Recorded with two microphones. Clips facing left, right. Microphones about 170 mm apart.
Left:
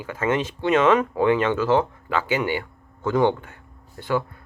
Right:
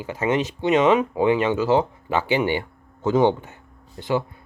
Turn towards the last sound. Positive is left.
turn(degrees=-20)  # may be behind; listen again after turning